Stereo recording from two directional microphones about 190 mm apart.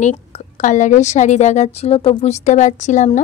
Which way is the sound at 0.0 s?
40° left (ahead or behind).